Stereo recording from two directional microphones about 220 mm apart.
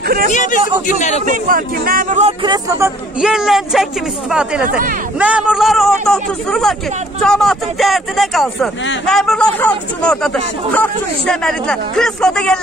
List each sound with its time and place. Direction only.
0.3 s a man's voice: 35° left (ahead or behind)
1.2 s speech: 40° right (ahead or behind)
2.4 s speech: 20° right (ahead or behind)
3.2 s speech: centre (ahead or behind)
4.6 s speech: 40° right (ahead or behind)
5.2 s speech: 5° right (ahead or behind)